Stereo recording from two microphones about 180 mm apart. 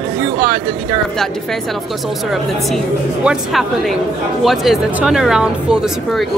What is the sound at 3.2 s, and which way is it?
Speech, 5° right (ahead or behind).